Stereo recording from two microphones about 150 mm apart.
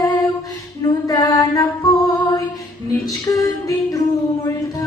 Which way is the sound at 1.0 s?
25° left (ahead or behind).